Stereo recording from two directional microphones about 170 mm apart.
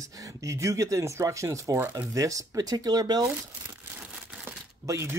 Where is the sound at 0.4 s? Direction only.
20° right (ahead or behind).